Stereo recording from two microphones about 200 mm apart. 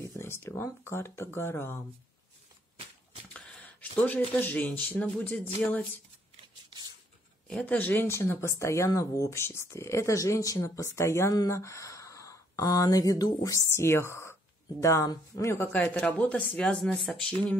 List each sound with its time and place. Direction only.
0.2 s speech: 10° left (ahead or behind)
3.3 s speech: 5° left (ahead or behind)
7.4 s speech: 5° left (ahead or behind)